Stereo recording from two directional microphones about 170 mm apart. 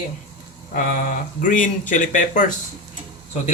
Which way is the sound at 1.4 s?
50° left (ahead or behind).